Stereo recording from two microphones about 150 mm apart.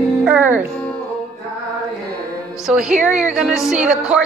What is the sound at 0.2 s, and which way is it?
Music, 5° right (ahead or behind).